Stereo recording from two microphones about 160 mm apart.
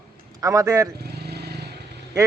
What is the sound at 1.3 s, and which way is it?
Vehicle, 90° right.